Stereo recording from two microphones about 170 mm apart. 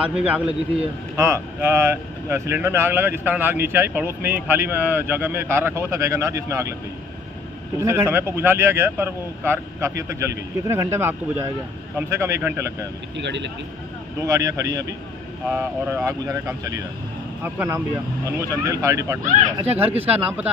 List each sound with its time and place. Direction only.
0.0 s speech: 5° right (ahead or behind)
7.8 s speech: 15° right (ahead or behind)
13.2 s speech: 90° right
14.2 s speech: 20° right (ahead or behind)
15.4 s speech: centre (ahead or behind)
16.1 s speech: 20° right (ahead or behind)